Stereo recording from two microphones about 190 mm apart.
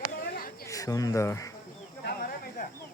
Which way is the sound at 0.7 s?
20° left (ahead or behind).